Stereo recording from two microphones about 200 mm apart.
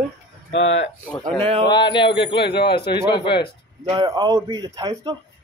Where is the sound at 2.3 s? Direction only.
55° left (ahead or behind).